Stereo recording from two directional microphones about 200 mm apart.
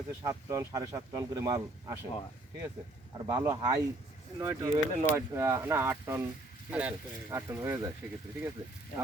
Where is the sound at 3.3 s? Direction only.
10° right (ahead or behind).